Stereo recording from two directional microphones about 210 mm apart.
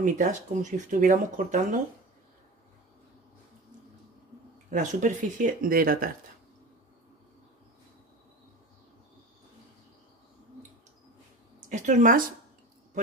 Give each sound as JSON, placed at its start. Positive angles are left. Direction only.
{"t": 0.0, "sound": "speech", "side_deg": -35}
{"t": 4.6, "sound": "speech", "side_deg": -35}
{"t": 11.6, "sound": "speech", "side_deg": -35}